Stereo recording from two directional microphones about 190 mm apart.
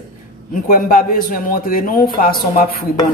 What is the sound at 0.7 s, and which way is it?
Speech, 50° left (ahead or behind).